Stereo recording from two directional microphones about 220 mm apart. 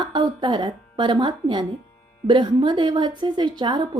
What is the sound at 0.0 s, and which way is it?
A woman's voice, 20° right (ahead or behind).